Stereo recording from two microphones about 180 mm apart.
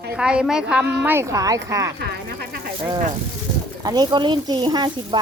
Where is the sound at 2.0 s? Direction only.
65° right (ahead or behind).